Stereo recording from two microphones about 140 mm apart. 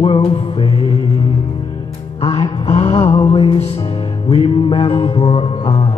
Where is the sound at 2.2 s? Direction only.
45° left (ahead or behind).